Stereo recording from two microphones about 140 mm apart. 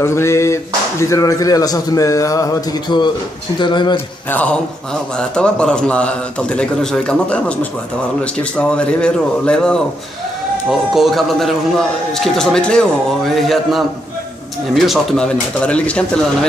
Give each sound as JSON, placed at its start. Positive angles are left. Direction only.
{"t": 0.0, "sound": "speech", "side_deg": 20}
{"t": 4.3, "sound": "a man's voice", "side_deg": 10}
{"t": 11.0, "sound": "a man's voice", "side_deg": 0}